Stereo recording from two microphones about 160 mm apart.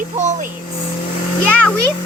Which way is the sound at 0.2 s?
45° right (ahead or behind).